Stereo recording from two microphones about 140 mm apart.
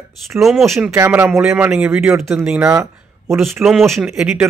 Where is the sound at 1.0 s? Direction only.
15° right (ahead or behind).